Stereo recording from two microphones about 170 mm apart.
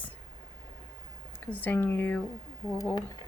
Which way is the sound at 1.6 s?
15° left (ahead or behind).